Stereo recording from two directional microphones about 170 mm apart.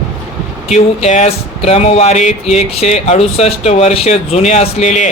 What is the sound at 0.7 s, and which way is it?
Speech, 40° left (ahead or behind).